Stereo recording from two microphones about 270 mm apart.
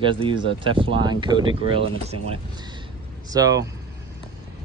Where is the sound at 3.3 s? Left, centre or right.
Centre.